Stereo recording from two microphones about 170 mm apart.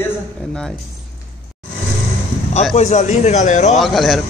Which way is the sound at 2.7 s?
45° left (ahead or behind).